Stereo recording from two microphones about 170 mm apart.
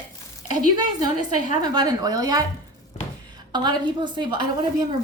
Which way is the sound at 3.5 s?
25° right (ahead or behind).